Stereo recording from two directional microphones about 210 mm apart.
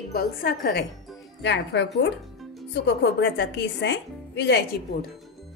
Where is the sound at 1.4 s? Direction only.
55° left (ahead or behind).